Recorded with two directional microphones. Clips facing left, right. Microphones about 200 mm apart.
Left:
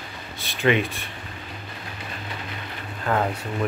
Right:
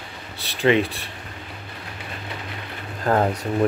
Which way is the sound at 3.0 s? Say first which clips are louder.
Right 4 dB; 35° right (ahead or behind).